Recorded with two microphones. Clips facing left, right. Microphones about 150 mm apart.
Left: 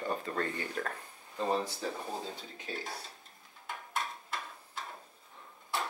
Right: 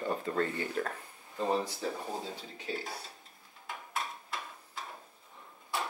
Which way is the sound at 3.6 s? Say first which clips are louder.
Left 1 dB; centre (ahead or behind).